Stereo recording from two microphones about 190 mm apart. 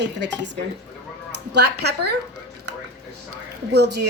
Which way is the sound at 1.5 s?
60° right (ahead or behind).